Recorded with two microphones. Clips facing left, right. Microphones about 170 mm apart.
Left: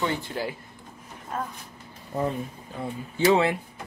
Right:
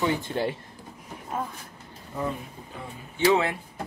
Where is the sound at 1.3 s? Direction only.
10° right (ahead or behind).